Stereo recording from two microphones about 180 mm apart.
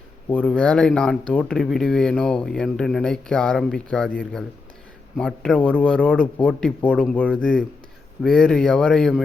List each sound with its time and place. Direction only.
0.3 s speech: 5° left (ahead or behind)